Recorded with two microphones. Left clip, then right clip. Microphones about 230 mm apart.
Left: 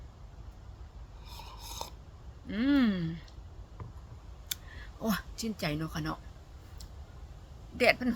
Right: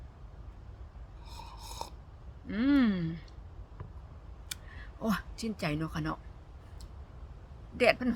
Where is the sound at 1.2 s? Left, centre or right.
Centre.